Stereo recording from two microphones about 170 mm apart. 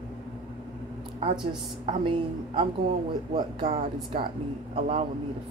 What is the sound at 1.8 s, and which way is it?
Speech, 35° right (ahead or behind).